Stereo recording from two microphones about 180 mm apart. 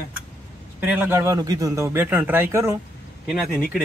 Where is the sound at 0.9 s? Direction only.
10° right (ahead or behind).